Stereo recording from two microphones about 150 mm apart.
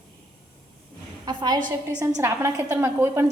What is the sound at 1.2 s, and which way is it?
Speech, 30° right (ahead or behind).